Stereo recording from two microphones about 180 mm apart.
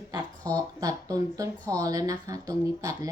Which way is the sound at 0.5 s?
20° right (ahead or behind).